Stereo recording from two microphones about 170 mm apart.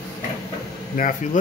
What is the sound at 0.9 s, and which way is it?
Speech, 50° left (ahead or behind).